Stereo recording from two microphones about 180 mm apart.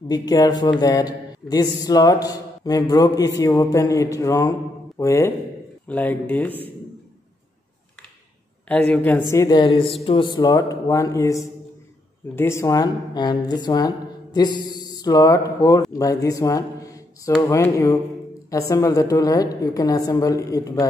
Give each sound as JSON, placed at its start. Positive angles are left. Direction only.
{"t": 0.1, "sound": "speech", "side_deg": 20}
{"t": 8.6, "sound": "speech", "side_deg": 5}